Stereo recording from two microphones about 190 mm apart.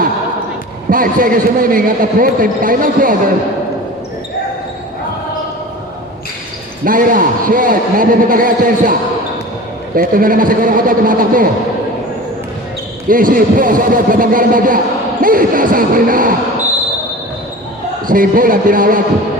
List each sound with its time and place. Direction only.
0.9 s a man's voice: 45° right (ahead or behind)
6.8 s a man's voice: 45° right (ahead or behind)
13.1 s a man's voice: 45° right (ahead or behind)
18.1 s a man's voice: 45° right (ahead or behind)